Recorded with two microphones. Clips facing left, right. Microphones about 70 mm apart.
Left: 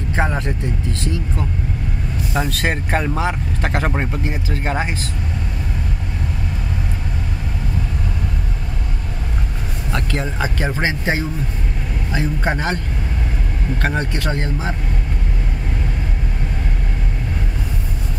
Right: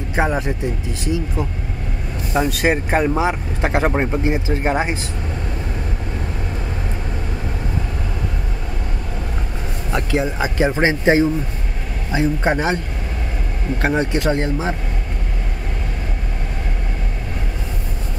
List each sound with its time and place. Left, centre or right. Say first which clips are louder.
0.1 s speech: right 2 dB; centre
4.1 s speech: right 5 dB; right
9.9 s speech: right 3 dB; centre
10.8 s speech: right 6 dB; right
12.1 s speech: right 4 dB; centre